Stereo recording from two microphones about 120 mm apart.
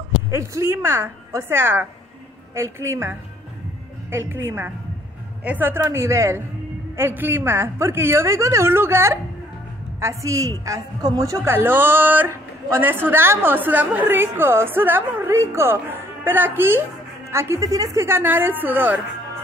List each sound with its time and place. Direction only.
0.3 s a woman's voice: 25° right (ahead or behind)